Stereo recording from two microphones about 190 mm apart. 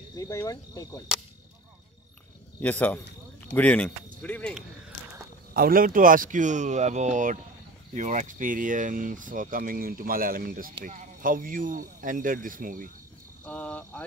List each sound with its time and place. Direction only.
0.1 s speech: 15° left (ahead or behind)
2.6 s speech: 10° left (ahead or behind)
5.5 s speech: 50° right (ahead or behind)
13.5 s speech: 10° left (ahead or behind)